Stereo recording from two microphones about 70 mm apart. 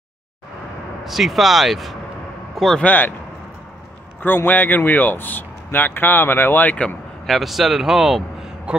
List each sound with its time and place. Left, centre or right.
1.0 s a man's voice: centre
2.8 s speech: left
4.5 s speech: left
7.2 s a man's voice: centre